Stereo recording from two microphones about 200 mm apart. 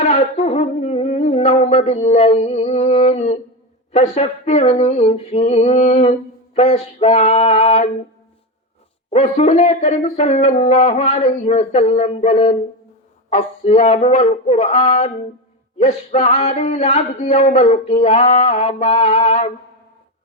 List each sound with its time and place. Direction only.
0.0 s a sound: 35° left (ahead or behind)
3.9 s speech: 35° left (ahead or behind)
9.0 s speech: 35° left (ahead or behind)